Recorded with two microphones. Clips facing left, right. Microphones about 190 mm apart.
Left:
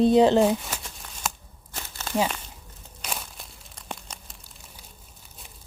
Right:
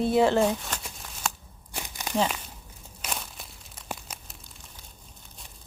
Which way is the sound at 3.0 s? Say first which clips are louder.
Even; centre (ahead or behind).